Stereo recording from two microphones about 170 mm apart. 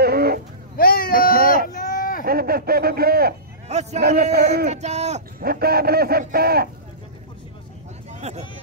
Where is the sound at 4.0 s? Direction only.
70° right (ahead or behind).